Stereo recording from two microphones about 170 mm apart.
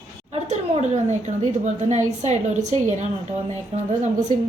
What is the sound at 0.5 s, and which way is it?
A woman's voice, 40° right (ahead or behind).